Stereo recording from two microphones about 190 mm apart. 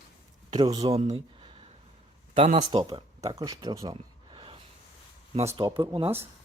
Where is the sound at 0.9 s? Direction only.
30° right (ahead or behind).